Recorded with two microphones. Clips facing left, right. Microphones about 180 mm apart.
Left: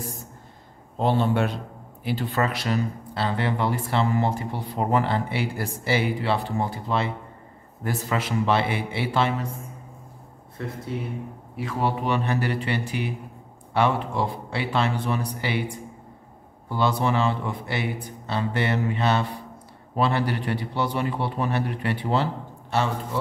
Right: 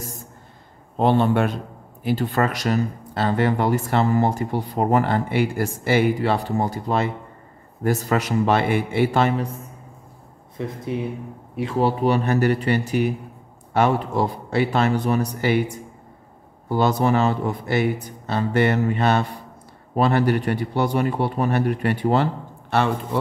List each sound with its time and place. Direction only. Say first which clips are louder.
0.9 s a man's voice: right 4 dB; 60° right (ahead or behind)
10.6 s speech: right 5 dB; 15° right (ahead or behind)
12.0 s speech: right 6 dB; 40° right (ahead or behind); by 22.8 s 55° right (ahead or behind)